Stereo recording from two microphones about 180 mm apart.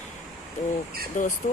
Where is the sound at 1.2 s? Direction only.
45° left (ahead or behind).